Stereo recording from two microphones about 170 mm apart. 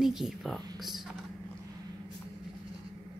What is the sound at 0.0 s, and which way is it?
A woman's voice, centre (ahead or behind).